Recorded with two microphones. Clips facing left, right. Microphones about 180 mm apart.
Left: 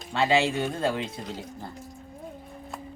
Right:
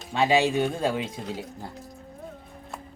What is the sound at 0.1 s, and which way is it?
Speech, 15° right (ahead or behind).